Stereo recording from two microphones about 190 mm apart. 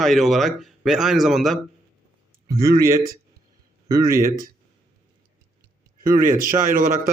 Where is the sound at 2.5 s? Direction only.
15° right (ahead or behind).